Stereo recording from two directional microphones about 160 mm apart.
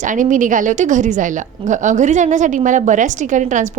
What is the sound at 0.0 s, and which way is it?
A woman's voice, 55° right (ahead or behind).